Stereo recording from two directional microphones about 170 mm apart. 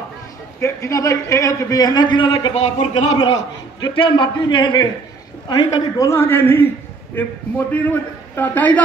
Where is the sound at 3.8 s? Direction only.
30° left (ahead or behind); by 7.3 s 10° left (ahead or behind).